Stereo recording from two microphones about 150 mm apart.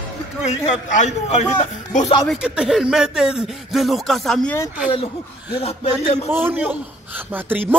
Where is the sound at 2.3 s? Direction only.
5° right (ahead or behind).